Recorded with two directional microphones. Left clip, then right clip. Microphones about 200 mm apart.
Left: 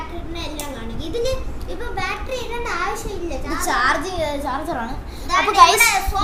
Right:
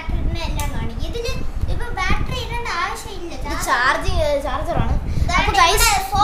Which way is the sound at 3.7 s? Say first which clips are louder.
Right 1 dB; centre (ahead or behind).